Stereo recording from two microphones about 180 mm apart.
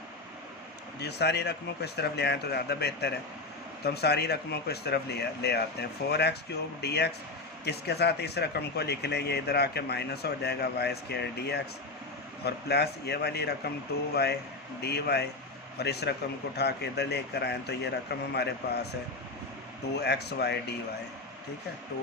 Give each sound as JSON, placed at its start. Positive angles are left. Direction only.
{"t": 0.9, "sound": "speech", "side_deg": 70}
{"t": 20.0, "sound": "speech", "side_deg": 65}